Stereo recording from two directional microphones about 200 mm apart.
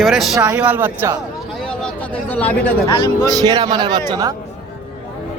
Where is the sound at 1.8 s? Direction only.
5° left (ahead or behind).